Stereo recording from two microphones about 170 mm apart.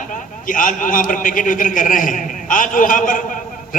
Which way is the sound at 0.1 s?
50° left (ahead or behind).